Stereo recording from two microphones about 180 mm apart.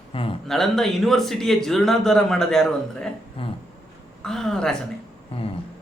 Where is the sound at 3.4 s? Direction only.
30° left (ahead or behind).